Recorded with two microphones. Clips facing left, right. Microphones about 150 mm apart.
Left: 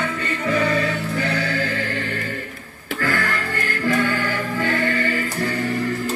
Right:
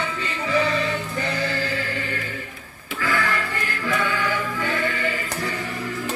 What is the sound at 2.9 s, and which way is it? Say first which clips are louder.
Music: left 1 dB; 45° left (ahead or behind).